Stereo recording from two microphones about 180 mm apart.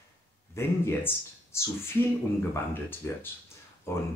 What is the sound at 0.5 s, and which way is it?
Speech, 15° left (ahead or behind).